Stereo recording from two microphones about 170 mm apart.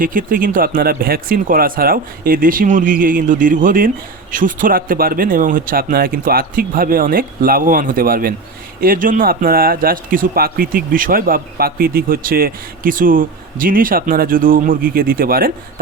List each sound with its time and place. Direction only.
0.0 s speech: 55° right (ahead or behind)